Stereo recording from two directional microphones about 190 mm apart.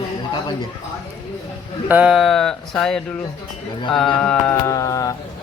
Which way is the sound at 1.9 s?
5° right (ahead or behind).